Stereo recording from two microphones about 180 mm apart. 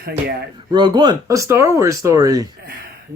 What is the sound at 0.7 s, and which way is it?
Speech, 25° right (ahead or behind).